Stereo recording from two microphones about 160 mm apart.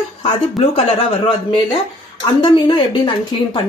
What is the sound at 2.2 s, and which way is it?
A woman's voice, 30° left (ahead or behind).